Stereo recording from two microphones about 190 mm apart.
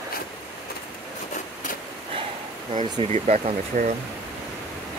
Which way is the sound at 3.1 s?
35° right (ahead or behind).